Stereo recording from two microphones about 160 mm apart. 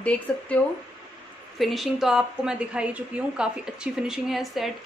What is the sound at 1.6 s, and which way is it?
A woman's voice, centre (ahead or behind).